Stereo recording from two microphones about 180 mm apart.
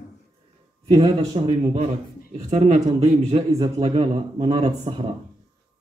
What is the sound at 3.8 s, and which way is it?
Speech, 35° right (ahead or behind).